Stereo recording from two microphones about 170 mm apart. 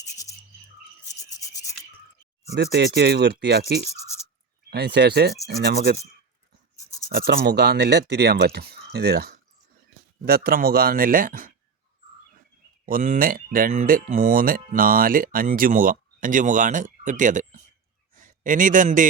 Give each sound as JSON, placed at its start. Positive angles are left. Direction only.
{"t": 1.4, "sound": "rub", "side_deg": 20}
{"t": 2.6, "sound": "speech", "side_deg": -85}
{"t": 7.1, "sound": "speech", "side_deg": -65}
{"t": 12.8, "sound": "speech", "side_deg": -50}
{"t": 18.1, "sound": "a sound", "side_deg": -50}